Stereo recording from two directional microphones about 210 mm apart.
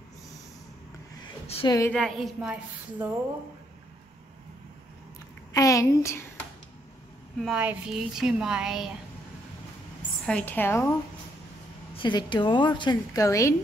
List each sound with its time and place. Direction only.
1.5 s a woman's voice: 25° left (ahead or behind)
1.8 s a woman's voice: 5° left (ahead or behind)
5.5 s a woman's voice: 15° left (ahead or behind)
7.3 s a woman's voice: 5° right (ahead or behind)
10.2 s a woman's voice: 5° left (ahead or behind)
12.0 s a woman's voice: 20° left (ahead or behind)